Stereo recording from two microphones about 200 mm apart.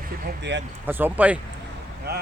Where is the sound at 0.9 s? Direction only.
10° right (ahead or behind).